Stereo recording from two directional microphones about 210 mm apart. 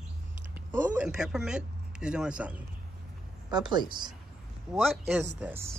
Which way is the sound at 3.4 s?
20° right (ahead or behind).